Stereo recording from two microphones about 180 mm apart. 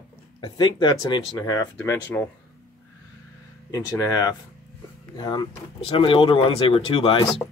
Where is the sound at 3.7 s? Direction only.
20° left (ahead or behind).